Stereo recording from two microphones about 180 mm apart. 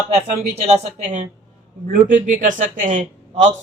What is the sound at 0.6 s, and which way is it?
Speech, 35° right (ahead or behind).